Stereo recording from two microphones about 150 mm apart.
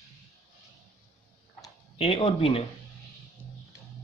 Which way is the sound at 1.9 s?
40° left (ahead or behind).